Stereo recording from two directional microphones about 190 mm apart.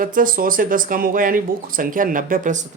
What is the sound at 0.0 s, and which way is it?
Speech, 45° right (ahead or behind).